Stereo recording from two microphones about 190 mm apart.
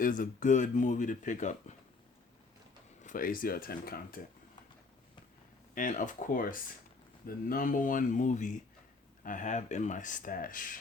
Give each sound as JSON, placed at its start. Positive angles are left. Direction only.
{"t": 0.0, "sound": "speech", "side_deg": 45}
{"t": 3.0, "sound": "speech", "side_deg": 45}
{"t": 5.7, "sound": "speech", "side_deg": 45}